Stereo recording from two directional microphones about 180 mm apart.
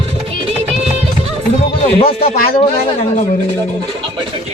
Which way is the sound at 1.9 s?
35° left (ahead or behind).